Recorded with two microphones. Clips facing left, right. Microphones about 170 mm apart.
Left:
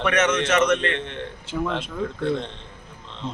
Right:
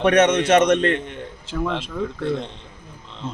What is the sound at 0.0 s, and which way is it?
Speech, 35° right (ahead or behind).